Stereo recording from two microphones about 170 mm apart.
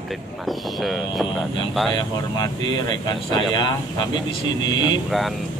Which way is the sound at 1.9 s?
25° left (ahead or behind).